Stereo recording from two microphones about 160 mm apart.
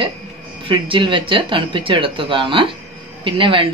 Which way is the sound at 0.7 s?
30° right (ahead or behind).